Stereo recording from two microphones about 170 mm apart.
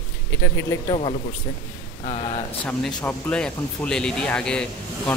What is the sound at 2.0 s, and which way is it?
Speech, 40° left (ahead or behind).